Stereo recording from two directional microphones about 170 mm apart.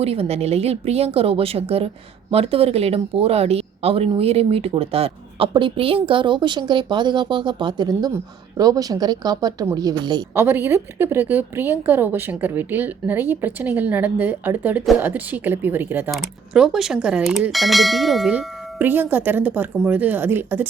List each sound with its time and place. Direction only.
0.0 s speech: 35° right (ahead or behind)
10.3 s a woman's voice: 15° right (ahead or behind)